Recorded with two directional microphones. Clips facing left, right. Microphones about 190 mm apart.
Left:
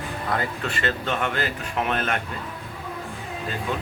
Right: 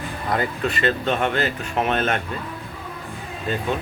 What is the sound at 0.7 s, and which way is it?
Speech, 20° right (ahead or behind).